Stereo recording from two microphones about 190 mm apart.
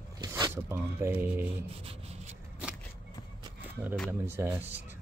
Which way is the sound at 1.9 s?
35° right (ahead or behind).